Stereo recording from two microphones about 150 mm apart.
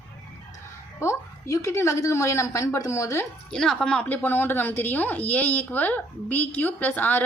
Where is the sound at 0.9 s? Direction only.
20° left (ahead or behind).